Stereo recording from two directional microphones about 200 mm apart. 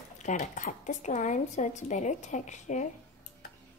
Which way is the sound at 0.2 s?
40° left (ahead or behind).